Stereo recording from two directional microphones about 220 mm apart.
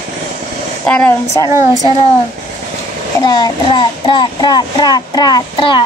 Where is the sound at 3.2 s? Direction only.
20° left (ahead or behind).